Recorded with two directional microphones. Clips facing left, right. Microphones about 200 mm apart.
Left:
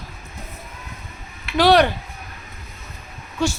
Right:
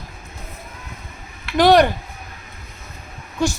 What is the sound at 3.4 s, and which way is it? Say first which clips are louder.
Speech: right 1 dB; 15° right (ahead or behind).